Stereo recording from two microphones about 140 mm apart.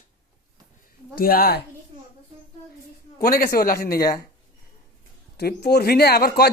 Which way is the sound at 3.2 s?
90° left.